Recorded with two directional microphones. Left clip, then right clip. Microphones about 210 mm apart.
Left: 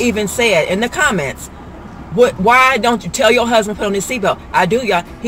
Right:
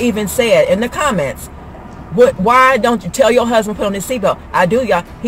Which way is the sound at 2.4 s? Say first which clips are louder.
Right 1 dB; 15° right (ahead or behind).